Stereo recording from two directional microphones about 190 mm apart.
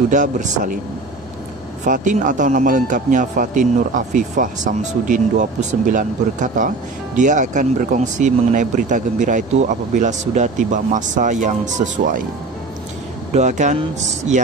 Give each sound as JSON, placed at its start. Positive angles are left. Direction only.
{"t": 0.1, "sound": "speech", "side_deg": -40}
{"t": 1.9, "sound": "speech", "side_deg": -45}
{"t": 13.3, "sound": "speech", "side_deg": -40}